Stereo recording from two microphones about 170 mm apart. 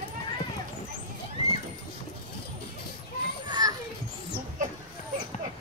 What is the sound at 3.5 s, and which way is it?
Children playing, 25° right (ahead or behind).